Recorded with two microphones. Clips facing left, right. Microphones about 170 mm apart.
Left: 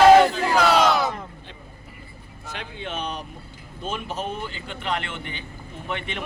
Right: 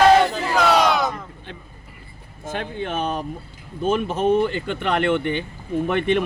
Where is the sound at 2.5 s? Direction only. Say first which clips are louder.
Right 7 dB; 50° right (ahead or behind).